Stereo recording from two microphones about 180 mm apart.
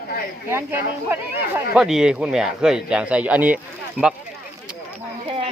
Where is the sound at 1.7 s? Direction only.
Centre (ahead or behind).